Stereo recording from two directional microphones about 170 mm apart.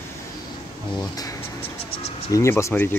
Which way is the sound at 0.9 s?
20° left (ahead or behind).